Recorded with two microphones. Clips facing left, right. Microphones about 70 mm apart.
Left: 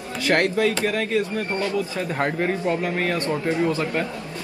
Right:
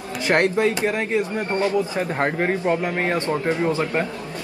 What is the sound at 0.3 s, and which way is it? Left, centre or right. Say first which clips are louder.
Speech: right 1 dB; right.